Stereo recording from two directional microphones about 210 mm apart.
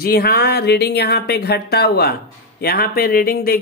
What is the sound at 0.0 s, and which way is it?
Speech, 45° left (ahead or behind).